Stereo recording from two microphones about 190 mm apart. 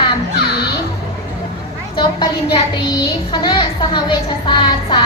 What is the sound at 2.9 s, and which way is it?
A child's voice, 20° left (ahead or behind).